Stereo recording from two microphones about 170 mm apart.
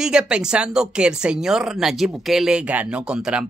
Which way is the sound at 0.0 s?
5° right (ahead or behind).